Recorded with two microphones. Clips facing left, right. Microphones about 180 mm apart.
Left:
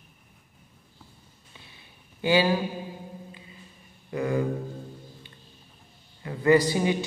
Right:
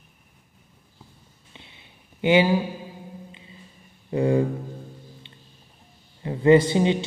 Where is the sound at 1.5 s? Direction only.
20° right (ahead or behind).